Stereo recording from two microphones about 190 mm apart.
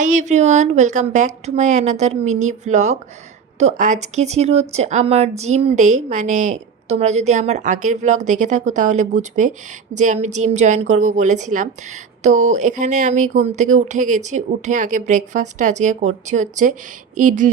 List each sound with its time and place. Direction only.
0.0 s speech: 40° right (ahead or behind)